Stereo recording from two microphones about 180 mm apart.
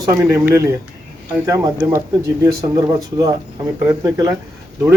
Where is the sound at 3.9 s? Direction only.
20° right (ahead or behind).